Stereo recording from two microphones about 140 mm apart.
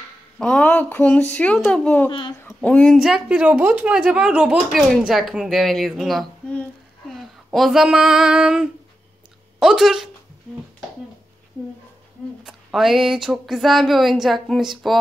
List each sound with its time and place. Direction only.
0.4 s a child's voice: 10° left (ahead or behind)
2.0 s speech: 35° left (ahead or behind)
2.4 s speech: 10° left (ahead or behind)
7.1 s female singing: centre (ahead or behind)
9.6 s speech: 5° right (ahead or behind)
12.4 s speech: centre (ahead or behind)